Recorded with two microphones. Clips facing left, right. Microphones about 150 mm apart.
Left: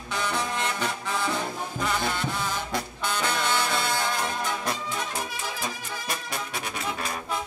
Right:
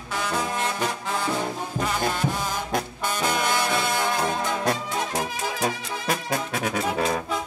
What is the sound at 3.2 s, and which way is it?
Music, 10° right (ahead or behind).